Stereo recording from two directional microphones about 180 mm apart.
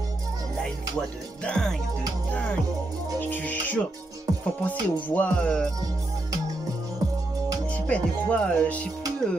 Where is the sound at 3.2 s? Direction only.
10° left (ahead or behind).